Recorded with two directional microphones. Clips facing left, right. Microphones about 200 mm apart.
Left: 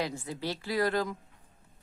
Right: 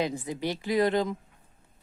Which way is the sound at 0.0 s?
20° right (ahead or behind).